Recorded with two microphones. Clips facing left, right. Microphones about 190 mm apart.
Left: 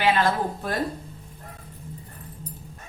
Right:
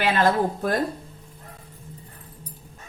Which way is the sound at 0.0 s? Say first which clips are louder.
Right 1 dB; 45° right (ahead or behind).